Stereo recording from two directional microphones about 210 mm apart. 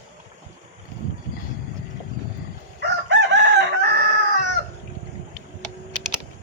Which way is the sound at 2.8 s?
55° right (ahead or behind).